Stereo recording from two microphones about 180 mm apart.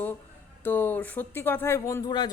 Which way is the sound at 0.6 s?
10° left (ahead or behind).